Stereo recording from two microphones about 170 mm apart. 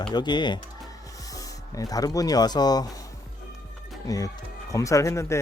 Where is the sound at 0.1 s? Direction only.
25° left (ahead or behind).